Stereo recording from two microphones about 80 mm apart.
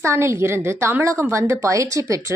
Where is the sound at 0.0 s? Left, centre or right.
Right.